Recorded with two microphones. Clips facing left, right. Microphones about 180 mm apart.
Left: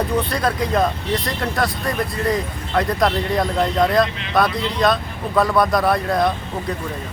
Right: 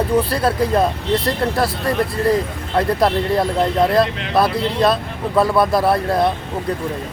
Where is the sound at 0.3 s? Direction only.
30° right (ahead or behind).